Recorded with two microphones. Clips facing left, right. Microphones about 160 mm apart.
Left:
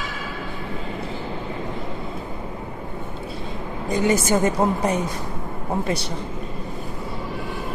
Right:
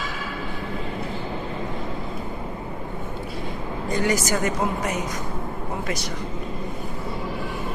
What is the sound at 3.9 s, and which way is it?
A woman's voice, 25° left (ahead or behind).